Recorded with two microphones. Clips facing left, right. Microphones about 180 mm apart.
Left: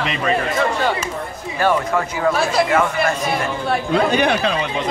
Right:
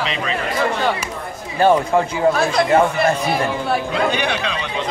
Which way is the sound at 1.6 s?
25° right (ahead or behind).